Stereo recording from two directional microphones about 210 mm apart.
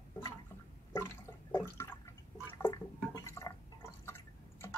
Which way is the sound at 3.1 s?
15° left (ahead or behind).